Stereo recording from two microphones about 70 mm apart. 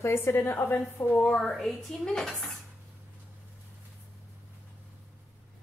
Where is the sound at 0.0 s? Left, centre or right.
Left.